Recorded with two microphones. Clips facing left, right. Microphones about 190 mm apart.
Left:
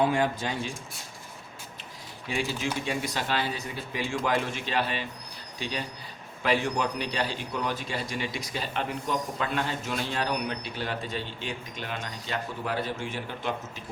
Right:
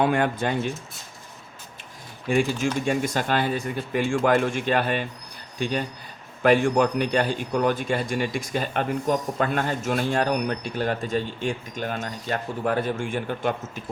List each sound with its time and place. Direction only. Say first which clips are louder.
0.0 s speech: right 3 dB; 55° right (ahead or behind)
2.2 s a man's voice: right 8 dB; 50° right (ahead or behind)